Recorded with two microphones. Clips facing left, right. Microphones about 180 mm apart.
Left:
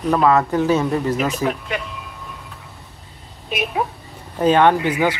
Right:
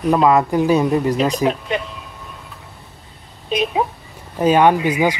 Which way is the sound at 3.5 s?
20° right (ahead or behind).